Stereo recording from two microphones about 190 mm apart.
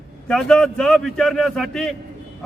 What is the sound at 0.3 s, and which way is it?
A man's voice, 5° left (ahead or behind).